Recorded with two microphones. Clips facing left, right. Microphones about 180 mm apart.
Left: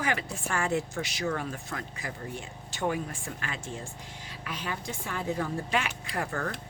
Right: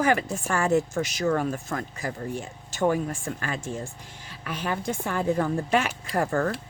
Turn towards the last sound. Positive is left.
turn(degrees=-45)  # may be behind; listen again after turning